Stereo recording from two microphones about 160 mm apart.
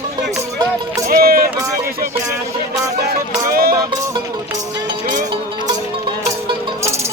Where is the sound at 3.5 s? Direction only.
70° right (ahead or behind).